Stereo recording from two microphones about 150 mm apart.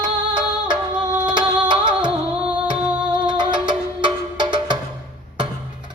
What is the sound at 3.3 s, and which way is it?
Music, 30° right (ahead or behind).